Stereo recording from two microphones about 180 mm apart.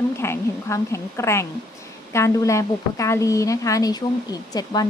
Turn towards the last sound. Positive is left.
turn(degrees=20)  # may be behind; listen again after turning